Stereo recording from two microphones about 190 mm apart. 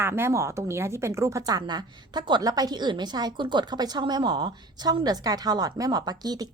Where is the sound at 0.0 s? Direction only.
10° right (ahead or behind).